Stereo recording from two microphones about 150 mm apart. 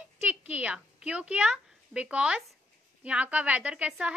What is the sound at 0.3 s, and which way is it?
A woman's voice, 10° right (ahead or behind).